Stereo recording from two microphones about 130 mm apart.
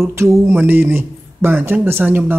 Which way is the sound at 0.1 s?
20° right (ahead or behind).